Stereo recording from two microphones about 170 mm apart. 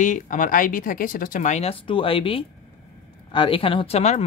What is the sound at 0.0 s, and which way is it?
Speech, 50° left (ahead or behind).